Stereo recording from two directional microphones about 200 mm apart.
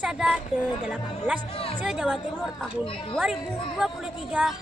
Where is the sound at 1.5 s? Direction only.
30° left (ahead or behind).